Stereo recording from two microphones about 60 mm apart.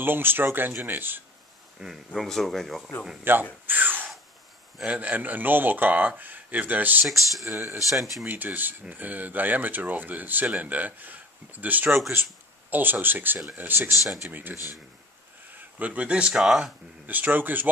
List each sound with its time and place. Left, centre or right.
0.0 s speech: right
1.8 s speech: centre
2.1 s speech: centre
3.3 s speech: right
3.6 s a sound: right
4.8 s speech: right
7.1 s speech: centre
7.4 s speech: right
8.3 s speech: right
16.3 s speech: centre
17.0 s speech: right